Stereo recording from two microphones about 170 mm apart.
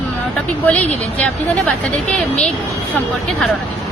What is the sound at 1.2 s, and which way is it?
Speech, 5° left (ahead or behind).